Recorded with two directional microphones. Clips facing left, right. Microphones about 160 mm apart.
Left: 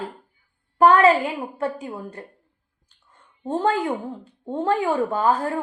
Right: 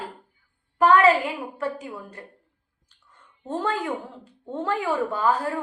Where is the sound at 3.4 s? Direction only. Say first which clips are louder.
Left 5 dB; 30° left (ahead or behind).